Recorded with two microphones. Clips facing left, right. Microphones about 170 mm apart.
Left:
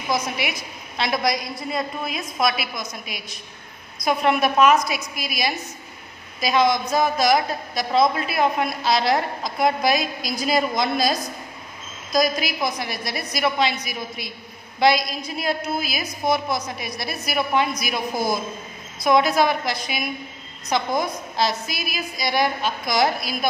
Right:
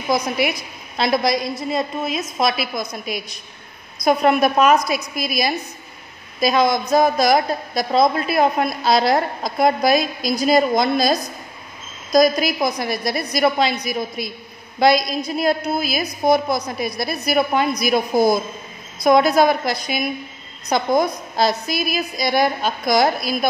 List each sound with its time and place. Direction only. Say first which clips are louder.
0.4 s a woman's voice: right 7 dB; 40° right (ahead or behind)
4.0 s a woman's voice: right 4 dB; 40° right (ahead or behind)
19.0 s a woman's voice: right 4 dB; 40° right (ahead or behind)